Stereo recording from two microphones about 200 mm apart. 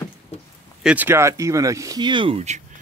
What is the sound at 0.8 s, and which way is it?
Speech, 5° right (ahead or behind).